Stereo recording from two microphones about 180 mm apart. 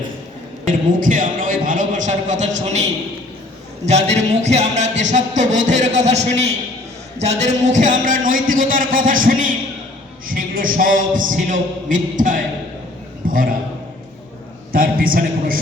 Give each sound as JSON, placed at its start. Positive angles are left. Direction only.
{"t": 0.9, "sound": "a sound", "side_deg": -50}
{"t": 3.8, "sound": "music", "side_deg": -35}
{"t": 7.2, "sound": "a man's voice", "side_deg": -35}
{"t": 14.7, "sound": "a man's voice", "side_deg": -55}